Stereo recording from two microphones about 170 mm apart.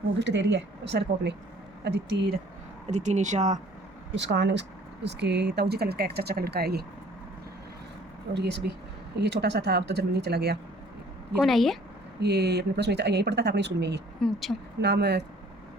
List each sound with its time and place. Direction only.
0.2 s a woman's voice: 90° right
2.9 s speech: 45° right (ahead or behind)
4.1 s a woman's voice: 90° right; by 6.8 s 70° right (ahead or behind)
8.3 s speech: 80° right
11.3 s speech: centre (ahead or behind)
12.2 s speech: 75° right (ahead or behind)
14.2 s speech: centre (ahead or behind)
14.8 s speech: 80° right